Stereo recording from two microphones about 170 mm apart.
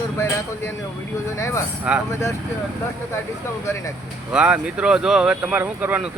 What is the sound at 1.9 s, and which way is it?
Speech, 5° right (ahead or behind).